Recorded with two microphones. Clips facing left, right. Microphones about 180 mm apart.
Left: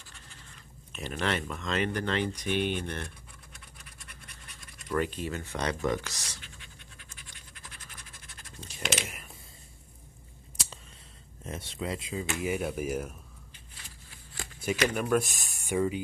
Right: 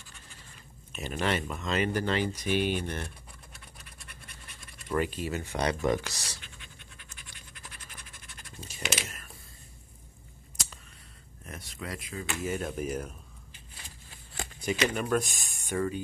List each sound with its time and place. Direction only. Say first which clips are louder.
0.9 s speech: right 1 dB; 5° right (ahead or behind)
4.9 s speech: right 1 dB; 5° right (ahead or behind)
8.5 s speech: left 1 dB; 5° right (ahead or behind)
9.0 s speech: left 2 dB; 15° left (ahead or behind)
11.4 s speech: left 5 dB; 25° left (ahead or behind)
12.4 s speech: left 1 dB; 10° left (ahead or behind)
14.6 s speech: left 1 dB; 5° left (ahead or behind)
15.7 s speech: left 2 dB; 10° left (ahead or behind)